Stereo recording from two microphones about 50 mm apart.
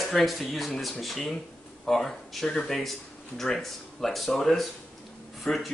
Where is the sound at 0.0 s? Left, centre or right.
Centre.